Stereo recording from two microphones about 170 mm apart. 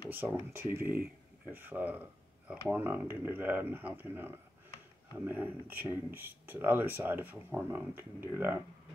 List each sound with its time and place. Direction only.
0.1 s speech: 10° right (ahead or behind)